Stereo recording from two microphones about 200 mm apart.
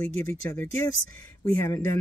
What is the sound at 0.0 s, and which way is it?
Speech, 15° left (ahead or behind).